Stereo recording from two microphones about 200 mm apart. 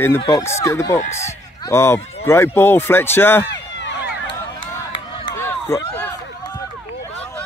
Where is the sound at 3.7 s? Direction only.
60° left (ahead or behind).